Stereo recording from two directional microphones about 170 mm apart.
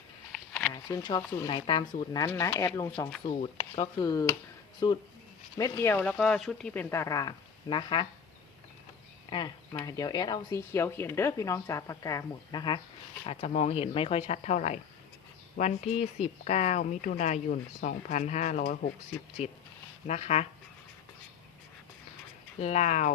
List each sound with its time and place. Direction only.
0.7 s speech: 25° left (ahead or behind)
3.2 s speech: 30° left (ahead or behind)
9.3 s speech: 25° left (ahead or behind); by 18.9 s 55° left (ahead or behind)
20.1 s speech: 40° left (ahead or behind)
22.6 s speech: 45° left (ahead or behind)